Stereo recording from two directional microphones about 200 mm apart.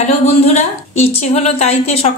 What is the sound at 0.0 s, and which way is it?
A woman's voice, 35° left (ahead or behind).